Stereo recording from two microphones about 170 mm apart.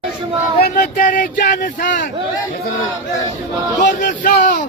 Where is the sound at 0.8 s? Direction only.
50° left (ahead or behind).